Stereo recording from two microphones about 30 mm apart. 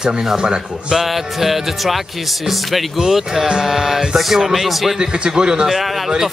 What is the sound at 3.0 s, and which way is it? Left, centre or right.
Speech, centre.